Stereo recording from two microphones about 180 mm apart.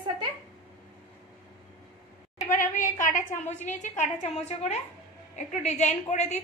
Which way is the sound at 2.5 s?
45° left (ahead or behind).